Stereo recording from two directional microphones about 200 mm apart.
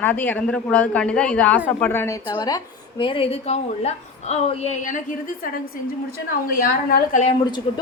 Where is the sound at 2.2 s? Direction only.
20° left (ahead or behind).